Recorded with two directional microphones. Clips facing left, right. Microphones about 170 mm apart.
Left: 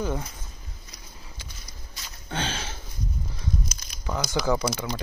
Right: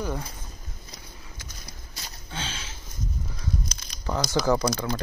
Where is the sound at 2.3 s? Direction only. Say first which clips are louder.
Left 6 dB; 65° left (ahead or behind).